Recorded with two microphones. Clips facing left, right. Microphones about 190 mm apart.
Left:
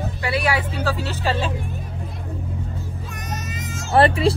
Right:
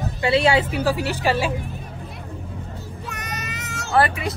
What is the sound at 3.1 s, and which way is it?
Music, 65° right (ahead or behind).